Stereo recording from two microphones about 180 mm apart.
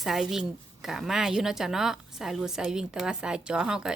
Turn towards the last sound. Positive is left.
turn(degrees=-5)  # may be behind; listen again after turning